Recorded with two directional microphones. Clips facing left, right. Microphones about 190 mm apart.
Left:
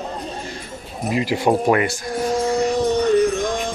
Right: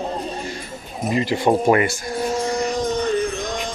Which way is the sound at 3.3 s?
50° left (ahead or behind).